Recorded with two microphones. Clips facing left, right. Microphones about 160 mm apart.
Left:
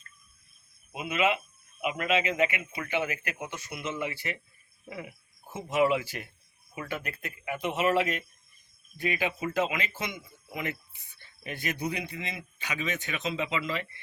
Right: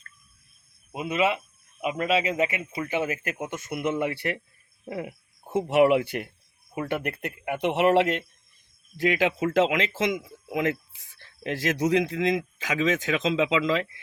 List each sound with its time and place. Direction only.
0.9 s speech: 35° right (ahead or behind); by 8.2 s 70° right (ahead or behind)
9.0 s speech: 90° right